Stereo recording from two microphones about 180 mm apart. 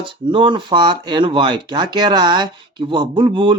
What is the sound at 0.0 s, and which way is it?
Speech, 25° right (ahead or behind).